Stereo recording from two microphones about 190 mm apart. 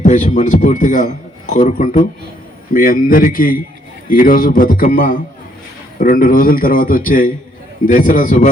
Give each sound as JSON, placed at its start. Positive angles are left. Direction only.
{"t": 0.0, "sound": "a man's voice", "side_deg": 40}